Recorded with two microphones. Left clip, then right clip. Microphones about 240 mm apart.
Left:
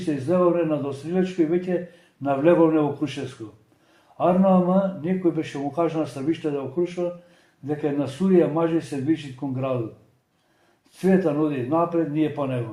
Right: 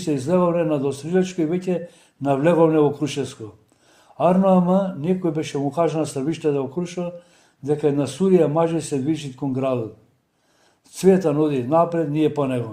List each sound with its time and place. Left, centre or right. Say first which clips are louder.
0.0 s a man's voice: right 1 dB; right
4.2 s a man's voice: right 2 dB; right
10.9 s a man's voice: right 4 dB; right